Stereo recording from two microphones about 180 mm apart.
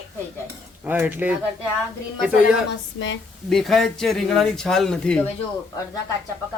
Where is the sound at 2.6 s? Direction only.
90° left.